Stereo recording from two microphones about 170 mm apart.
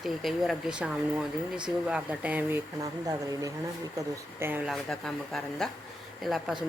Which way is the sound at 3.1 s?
20° right (ahead or behind).